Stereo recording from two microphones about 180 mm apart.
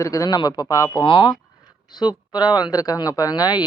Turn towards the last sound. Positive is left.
turn(degrees=20)  # may be behind; listen again after turning